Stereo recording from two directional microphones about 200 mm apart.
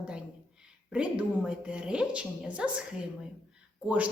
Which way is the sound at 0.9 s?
5° right (ahead or behind).